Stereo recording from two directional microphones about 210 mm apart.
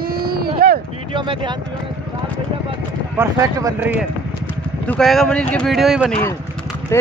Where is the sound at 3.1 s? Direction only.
15° right (ahead or behind).